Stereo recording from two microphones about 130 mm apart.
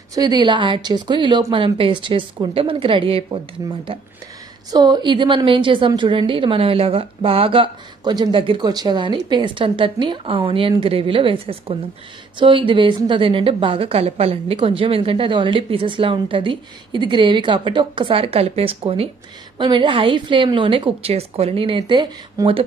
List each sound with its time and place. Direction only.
0.1 s a woman's voice: 30° right (ahead or behind)
3.6 s a woman's voice: 30° right (ahead or behind); by 19.0 s 45° right (ahead or behind)
19.6 s a woman's voice: 35° right (ahead or behind)